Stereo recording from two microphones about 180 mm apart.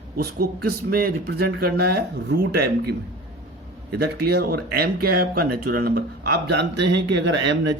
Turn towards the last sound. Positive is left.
turn(degrees=-85)